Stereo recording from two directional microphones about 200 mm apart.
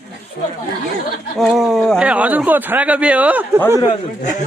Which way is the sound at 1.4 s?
Centre (ahead or behind).